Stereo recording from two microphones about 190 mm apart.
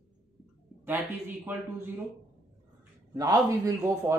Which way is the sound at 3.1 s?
20° right (ahead or behind).